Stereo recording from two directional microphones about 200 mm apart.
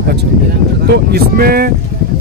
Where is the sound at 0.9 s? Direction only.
50° right (ahead or behind).